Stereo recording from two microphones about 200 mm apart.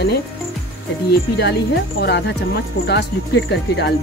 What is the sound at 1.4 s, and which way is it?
Speech, 55° left (ahead or behind).